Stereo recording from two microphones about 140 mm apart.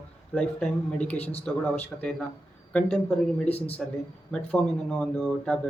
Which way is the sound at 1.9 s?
10° left (ahead or behind).